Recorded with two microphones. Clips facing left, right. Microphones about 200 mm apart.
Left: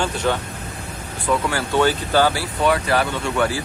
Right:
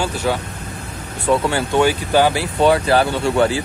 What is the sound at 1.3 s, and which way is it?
Speech, 25° right (ahead or behind).